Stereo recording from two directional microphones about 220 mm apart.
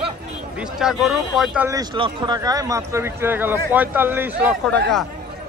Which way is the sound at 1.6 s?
20° right (ahead or behind).